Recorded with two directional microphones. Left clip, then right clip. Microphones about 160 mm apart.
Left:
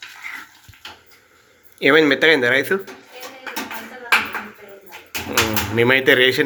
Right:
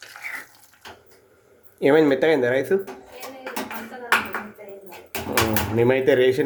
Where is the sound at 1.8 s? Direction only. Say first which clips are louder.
Left 3 dB; 15° right (ahead or behind).